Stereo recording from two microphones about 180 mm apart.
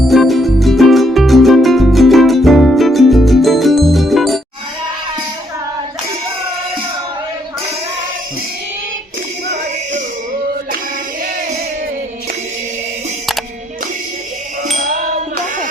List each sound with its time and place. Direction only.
0.1 s music: centre (ahead or behind)
14.7 s music: 40° right (ahead or behind)